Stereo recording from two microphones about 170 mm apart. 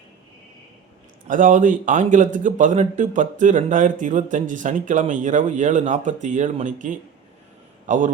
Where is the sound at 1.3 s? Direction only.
50° right (ahead or behind).